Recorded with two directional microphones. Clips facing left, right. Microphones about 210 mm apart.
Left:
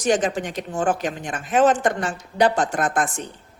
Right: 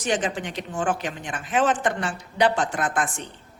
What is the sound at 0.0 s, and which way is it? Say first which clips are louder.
Speech: left 5 dB; 45° left (ahead or behind).